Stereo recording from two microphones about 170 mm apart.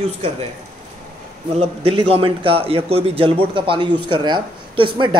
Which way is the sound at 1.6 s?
35° right (ahead or behind).